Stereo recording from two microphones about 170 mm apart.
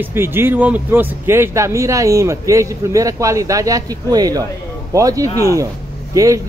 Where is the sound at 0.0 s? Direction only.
15° right (ahead or behind).